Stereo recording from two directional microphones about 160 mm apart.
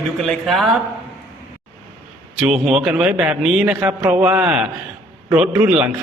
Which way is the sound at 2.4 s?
5° right (ahead or behind).